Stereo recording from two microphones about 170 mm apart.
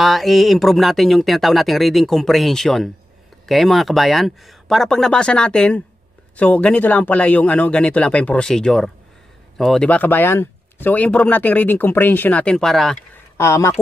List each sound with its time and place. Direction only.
0.0 s speech: centre (ahead or behind)
13.4 s speech: 15° left (ahead or behind)